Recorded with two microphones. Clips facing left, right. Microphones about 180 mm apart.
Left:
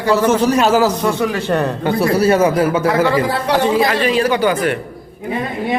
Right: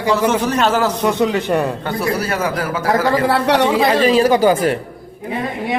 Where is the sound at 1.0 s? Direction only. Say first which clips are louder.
Right 1 dB; 20° right (ahead or behind).